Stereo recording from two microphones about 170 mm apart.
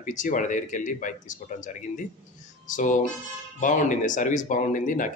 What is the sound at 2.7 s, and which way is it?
Speech, 50° left (ahead or behind).